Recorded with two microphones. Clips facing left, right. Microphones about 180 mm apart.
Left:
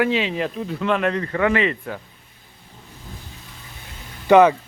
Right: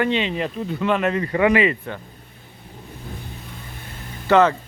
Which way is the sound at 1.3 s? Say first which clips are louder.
Right 4 dB; 15° right (ahead or behind).